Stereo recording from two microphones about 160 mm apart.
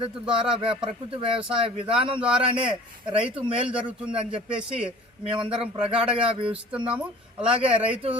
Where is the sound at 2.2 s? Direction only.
5° right (ahead or behind).